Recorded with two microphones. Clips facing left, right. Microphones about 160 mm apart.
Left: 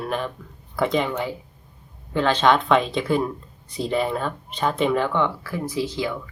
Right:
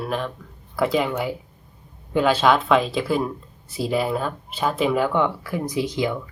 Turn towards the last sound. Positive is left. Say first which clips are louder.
# right 2 dB
turn(degrees=-15)  # may be behind; listen again after turning